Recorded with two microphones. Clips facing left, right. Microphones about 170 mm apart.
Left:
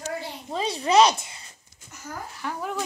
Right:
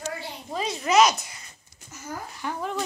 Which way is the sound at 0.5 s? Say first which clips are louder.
Left 1 dB; 30° left (ahead or behind).